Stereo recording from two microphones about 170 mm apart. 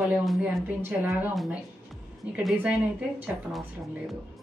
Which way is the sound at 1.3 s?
Centre (ahead or behind).